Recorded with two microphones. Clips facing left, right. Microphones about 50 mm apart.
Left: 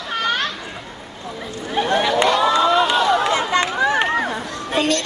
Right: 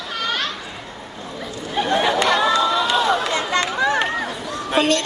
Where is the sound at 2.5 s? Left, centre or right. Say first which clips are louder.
Left 3 dB; left.